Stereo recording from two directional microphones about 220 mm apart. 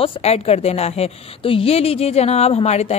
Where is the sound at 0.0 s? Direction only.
30° left (ahead or behind).